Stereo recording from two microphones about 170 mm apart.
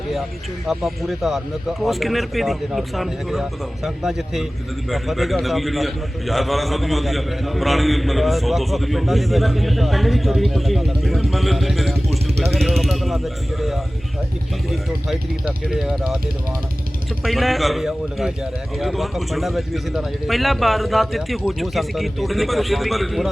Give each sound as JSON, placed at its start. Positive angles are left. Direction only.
{"t": 0.7, "sound": "a man's voice", "side_deg": 0}
{"t": 17.2, "sound": "a man's voice", "side_deg": 0}